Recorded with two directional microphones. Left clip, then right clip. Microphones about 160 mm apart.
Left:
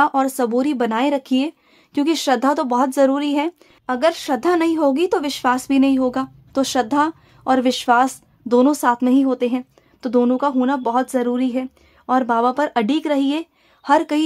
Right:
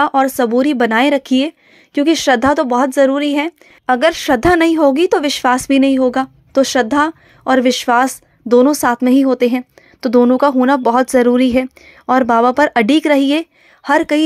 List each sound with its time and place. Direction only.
0.0 s speech: 20° right (ahead or behind)
3.8 s speech: 25° right (ahead or behind)